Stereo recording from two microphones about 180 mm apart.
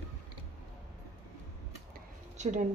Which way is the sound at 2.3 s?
40° right (ahead or behind).